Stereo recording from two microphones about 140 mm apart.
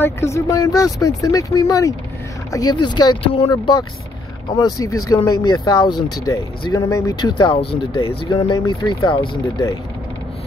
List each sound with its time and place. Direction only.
0.0 s speech: 20° left (ahead or behind); by 8.2 s 40° left (ahead or behind)
8.3 s speech: 25° left (ahead or behind)